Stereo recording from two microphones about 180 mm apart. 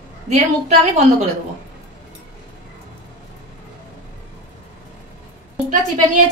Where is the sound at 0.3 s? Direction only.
40° right (ahead or behind).